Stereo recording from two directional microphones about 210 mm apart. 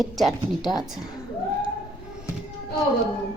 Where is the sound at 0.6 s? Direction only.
20° left (ahead or behind).